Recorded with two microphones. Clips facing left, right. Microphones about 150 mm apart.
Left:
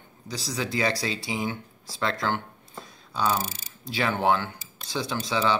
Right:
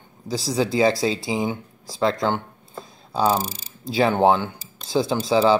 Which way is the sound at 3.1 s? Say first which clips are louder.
Right 6 dB; 35° right (ahead or behind).